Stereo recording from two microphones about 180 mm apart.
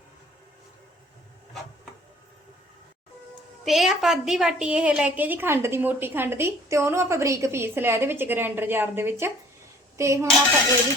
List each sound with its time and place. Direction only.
3.6 s a woman's voice: centre (ahead or behind); by 10.2 s 15° right (ahead or behind)